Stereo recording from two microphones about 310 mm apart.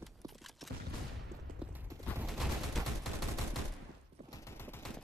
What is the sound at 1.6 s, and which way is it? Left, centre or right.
Fusillade, centre.